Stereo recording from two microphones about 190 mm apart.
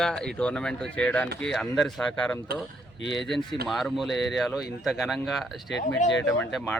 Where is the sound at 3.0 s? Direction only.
70° left (ahead or behind).